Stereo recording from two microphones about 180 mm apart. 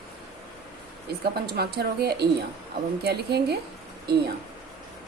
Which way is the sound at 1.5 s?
60° right (ahead or behind).